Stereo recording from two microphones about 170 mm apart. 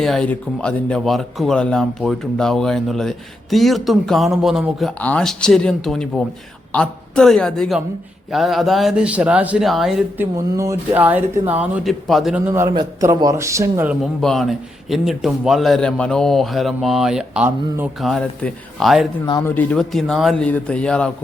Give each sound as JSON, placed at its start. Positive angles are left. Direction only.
{"t": 0.0, "sound": "speech", "side_deg": 5}
{"t": 10.3, "sound": "speech", "side_deg": -20}
{"t": 12.5, "sound": "speech", "side_deg": -15}
{"t": 14.0, "sound": "speech", "side_deg": 0}
{"t": 18.0, "sound": "speech", "side_deg": 5}
{"t": 19.2, "sound": "speech", "side_deg": 25}
{"t": 19.5, "sound": "speech", "side_deg": 5}